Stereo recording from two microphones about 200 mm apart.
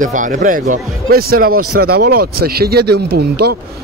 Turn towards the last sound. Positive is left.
turn(degrees=-55)  # may be behind; listen again after turning